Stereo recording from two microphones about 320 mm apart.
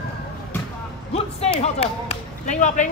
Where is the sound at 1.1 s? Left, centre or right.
Centre.